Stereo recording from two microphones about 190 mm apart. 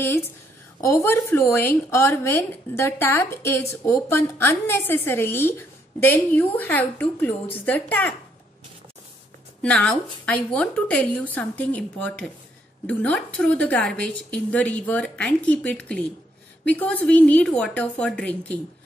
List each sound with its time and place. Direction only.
0.8 s speech: 15° left (ahead or behind)
9.6 s speech: 5° left (ahead or behind)